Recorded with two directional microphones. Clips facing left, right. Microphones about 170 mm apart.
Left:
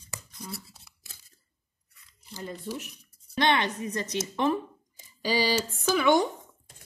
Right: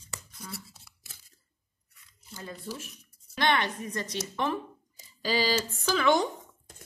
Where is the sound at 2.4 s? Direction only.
20° left (ahead or behind).